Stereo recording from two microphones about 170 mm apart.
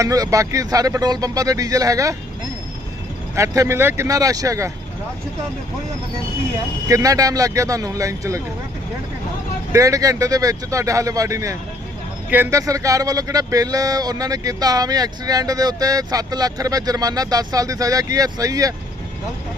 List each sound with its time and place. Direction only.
0.0 s speech: 20° right (ahead or behind)
3.3 s speech: 20° right (ahead or behind)
6.8 s speech: 20° right (ahead or behind)
9.7 s speech: 20° right (ahead or behind)